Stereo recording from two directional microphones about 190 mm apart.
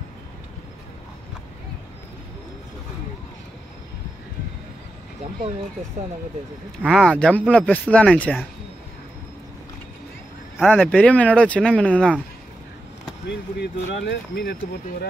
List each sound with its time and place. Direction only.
6.0 s speech: 40° right (ahead or behind)
6.8 s speech: centre (ahead or behind)
10.6 s speech: 5° left (ahead or behind)
13.6 s speech: 60° left (ahead or behind)